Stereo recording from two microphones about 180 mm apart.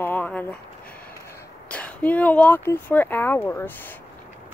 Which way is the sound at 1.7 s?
5° left (ahead or behind).